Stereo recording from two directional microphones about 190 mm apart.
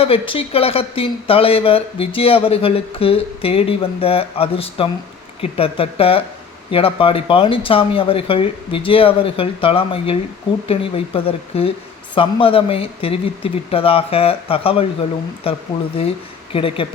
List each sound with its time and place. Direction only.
0.0 s speech: 30° left (ahead or behind)